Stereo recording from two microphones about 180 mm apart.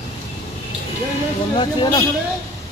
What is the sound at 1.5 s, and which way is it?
Speech, 25° left (ahead or behind).